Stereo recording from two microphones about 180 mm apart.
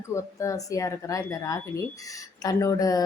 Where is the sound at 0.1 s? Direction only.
15° left (ahead or behind).